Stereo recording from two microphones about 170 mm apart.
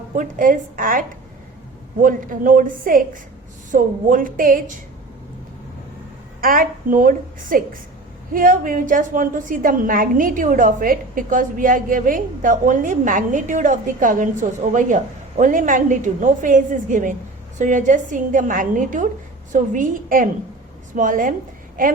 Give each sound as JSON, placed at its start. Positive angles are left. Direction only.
{"t": 0.2, "sound": "a woman's voice", "side_deg": -50}
{"t": 6.4, "sound": "a woman's voice", "side_deg": -55}